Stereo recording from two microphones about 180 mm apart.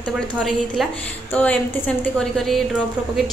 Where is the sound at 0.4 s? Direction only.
Centre (ahead or behind).